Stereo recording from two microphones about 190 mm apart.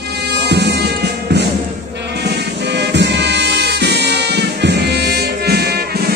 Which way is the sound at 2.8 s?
65° right (ahead or behind).